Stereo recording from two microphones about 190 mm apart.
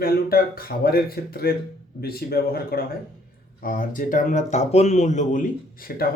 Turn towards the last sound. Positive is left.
turn(degrees=50)  # may be behind; listen again after turning